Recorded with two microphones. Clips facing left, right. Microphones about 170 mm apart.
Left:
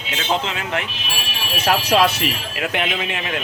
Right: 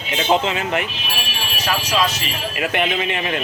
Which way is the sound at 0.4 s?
5° right (ahead or behind).